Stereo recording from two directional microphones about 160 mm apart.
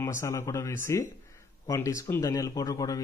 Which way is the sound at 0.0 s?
20° left (ahead or behind).